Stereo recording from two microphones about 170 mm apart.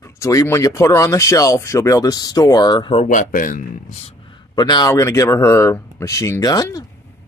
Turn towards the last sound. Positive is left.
turn(degrees=20)  # may be behind; listen again after turning